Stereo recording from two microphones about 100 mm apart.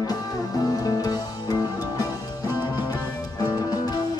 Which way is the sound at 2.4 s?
20° right (ahead or behind).